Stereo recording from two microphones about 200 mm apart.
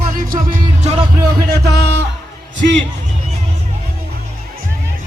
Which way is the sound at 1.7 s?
55° right (ahead or behind).